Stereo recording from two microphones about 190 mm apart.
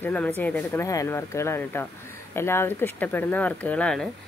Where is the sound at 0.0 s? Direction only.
10° left (ahead or behind).